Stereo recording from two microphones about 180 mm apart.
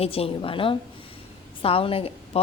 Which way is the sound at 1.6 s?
30° left (ahead or behind).